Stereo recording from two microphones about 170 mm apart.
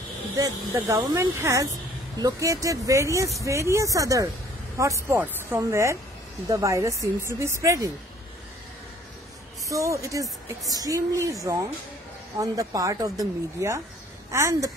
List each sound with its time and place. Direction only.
0.4 s speech: 20° right (ahead or behind)
9.7 s speech: 20° right (ahead or behind)